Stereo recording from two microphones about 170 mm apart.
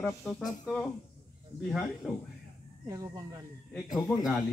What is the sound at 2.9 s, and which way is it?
Speech, 20° right (ahead or behind).